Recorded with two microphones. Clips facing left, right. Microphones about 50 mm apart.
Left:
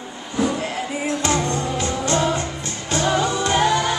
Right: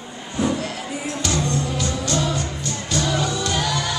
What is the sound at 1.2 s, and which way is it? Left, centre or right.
Music, left.